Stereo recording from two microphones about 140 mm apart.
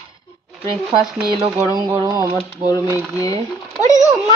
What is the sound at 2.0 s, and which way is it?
Speech, 25° right (ahead or behind).